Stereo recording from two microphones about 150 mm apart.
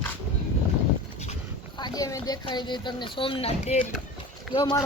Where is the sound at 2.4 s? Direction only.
30° left (ahead or behind).